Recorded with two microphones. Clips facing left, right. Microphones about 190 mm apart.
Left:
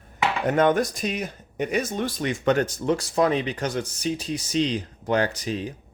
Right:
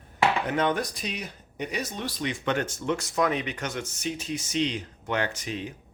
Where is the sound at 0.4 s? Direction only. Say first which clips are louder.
Left 6 dB; 45° left (ahead or behind).